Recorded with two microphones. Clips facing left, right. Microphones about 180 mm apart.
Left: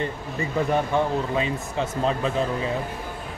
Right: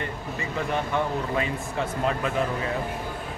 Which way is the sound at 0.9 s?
20° left (ahead or behind).